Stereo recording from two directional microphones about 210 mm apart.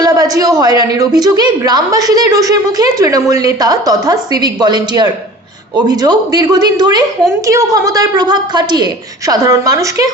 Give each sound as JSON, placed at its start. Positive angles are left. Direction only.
{"t": 0.0, "sound": "a woman's voice", "side_deg": -15}